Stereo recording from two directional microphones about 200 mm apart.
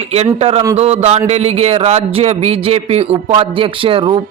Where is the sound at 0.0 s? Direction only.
30° right (ahead or behind).